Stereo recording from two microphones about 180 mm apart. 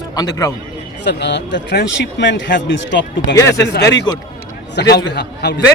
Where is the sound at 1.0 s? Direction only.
75° left (ahead or behind).